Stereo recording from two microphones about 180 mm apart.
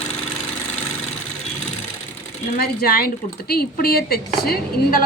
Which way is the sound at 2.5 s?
60° left (ahead or behind).